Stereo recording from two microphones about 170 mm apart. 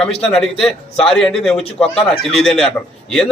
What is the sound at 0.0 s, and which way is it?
A man's voice, 5° left (ahead or behind).